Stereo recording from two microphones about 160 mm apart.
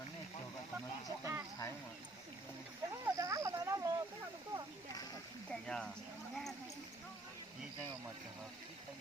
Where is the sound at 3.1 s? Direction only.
20° right (ahead or behind).